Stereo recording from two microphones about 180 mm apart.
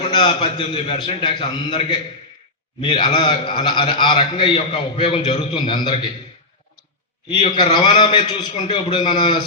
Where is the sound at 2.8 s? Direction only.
25° left (ahead or behind).